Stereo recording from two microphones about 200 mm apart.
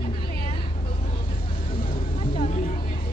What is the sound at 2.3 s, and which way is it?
Vehicle, 40° left (ahead or behind).